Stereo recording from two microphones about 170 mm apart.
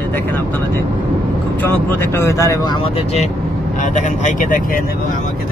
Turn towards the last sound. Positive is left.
turn(degrees=50)  # may be behind; listen again after turning